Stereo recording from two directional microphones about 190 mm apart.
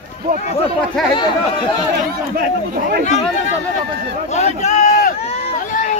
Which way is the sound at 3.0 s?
40° left (ahead or behind).